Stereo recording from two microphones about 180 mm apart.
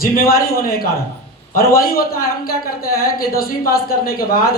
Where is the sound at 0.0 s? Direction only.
50° left (ahead or behind).